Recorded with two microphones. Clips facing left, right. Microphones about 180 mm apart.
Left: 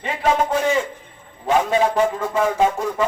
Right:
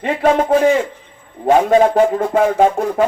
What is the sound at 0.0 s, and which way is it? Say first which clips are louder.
Speech: right 5 dB; 55° right (ahead or behind).